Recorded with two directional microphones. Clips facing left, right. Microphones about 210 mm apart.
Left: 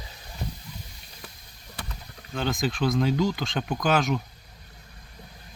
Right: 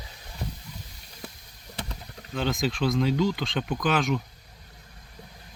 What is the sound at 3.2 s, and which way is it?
Speech, 45° left (ahead or behind).